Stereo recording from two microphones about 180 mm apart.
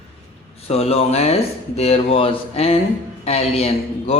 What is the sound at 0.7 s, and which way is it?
Speech, 35° left (ahead or behind).